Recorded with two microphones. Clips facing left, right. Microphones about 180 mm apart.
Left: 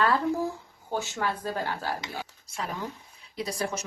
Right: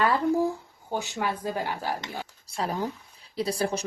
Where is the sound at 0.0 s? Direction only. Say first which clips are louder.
Right 2 dB; 15° right (ahead or behind).